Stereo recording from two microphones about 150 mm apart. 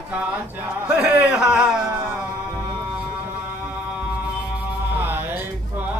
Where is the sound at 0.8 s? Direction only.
10° right (ahead or behind).